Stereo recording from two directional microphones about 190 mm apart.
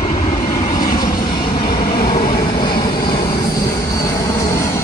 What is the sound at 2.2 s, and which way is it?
Vehicle, 45° left (ahead or behind).